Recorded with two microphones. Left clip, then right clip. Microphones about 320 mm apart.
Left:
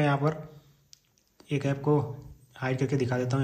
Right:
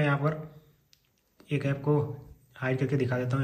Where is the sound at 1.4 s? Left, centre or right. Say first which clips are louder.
Left 1 dB; centre.